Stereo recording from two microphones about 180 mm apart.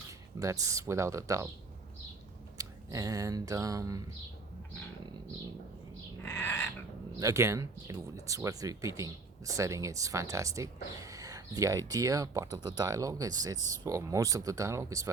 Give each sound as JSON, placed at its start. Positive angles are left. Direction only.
{"t": 0.1, "sound": "speech", "side_deg": -20}
{"t": 2.6, "sound": "speech", "side_deg": -20}
{"t": 6.2, "sound": "a sound", "side_deg": 15}
{"t": 7.2, "sound": "speech", "side_deg": -15}